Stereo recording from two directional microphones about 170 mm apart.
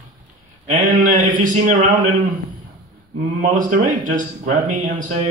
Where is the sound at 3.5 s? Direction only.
50° right (ahead or behind).